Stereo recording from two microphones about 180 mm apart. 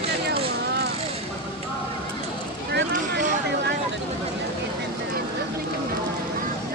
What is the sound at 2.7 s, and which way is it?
Vehicle, 65° right (ahead or behind).